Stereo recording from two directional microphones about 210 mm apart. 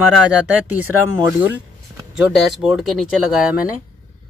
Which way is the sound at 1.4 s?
10° right (ahead or behind).